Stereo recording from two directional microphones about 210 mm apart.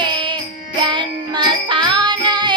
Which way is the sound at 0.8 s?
20° right (ahead or behind).